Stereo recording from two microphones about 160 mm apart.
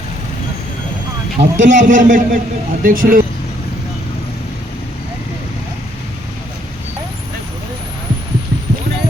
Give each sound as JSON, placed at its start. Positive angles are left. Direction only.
{"t": 1.4, "sound": "a man's voice", "side_deg": -50}